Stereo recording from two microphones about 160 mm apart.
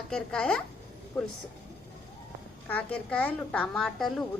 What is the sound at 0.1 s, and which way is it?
Speech, 5° left (ahead or behind).